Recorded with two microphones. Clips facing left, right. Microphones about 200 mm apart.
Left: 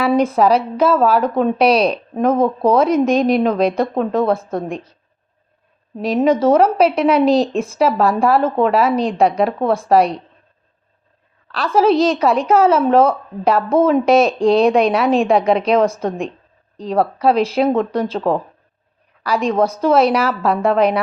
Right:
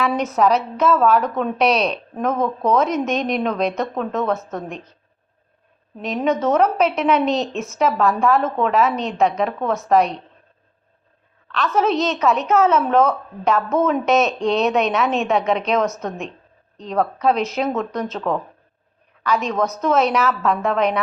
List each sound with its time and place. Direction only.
0.0 s a woman's voice: 30° left (ahead or behind)
6.2 s a woman's voice: 30° left (ahead or behind)
11.4 s a woman's voice: 30° left (ahead or behind)